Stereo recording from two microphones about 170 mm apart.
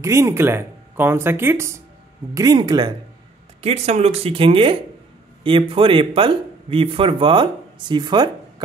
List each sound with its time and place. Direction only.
0.0 s speech: 15° right (ahead or behind)
3.6 s speech: 40° right (ahead or behind)